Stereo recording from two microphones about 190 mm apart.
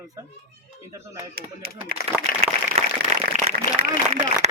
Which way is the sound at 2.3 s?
50° left (ahead or behind).